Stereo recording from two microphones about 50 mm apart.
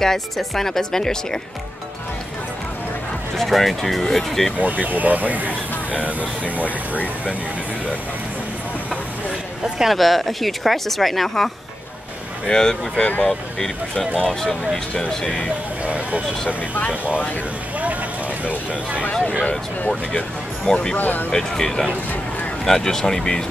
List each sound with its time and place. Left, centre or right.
0.0 s speech: centre
3.3 s a woman's voice: centre
4.6 s speech: right
5.5 s speech: left
9.8 s a woman's voice: centre
15.9 s speech: right
18.4 s speech: right
19.9 s speech: centre
20.9 s speech: left
21.3 s speech: centre